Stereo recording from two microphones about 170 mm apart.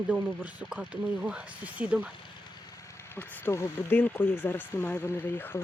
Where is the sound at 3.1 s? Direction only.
10° left (ahead or behind).